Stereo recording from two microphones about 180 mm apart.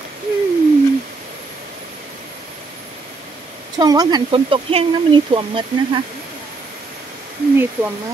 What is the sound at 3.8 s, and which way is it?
Speech, 20° right (ahead or behind).